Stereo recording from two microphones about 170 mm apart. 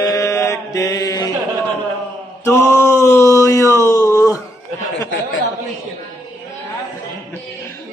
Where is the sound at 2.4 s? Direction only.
15° left (ahead or behind).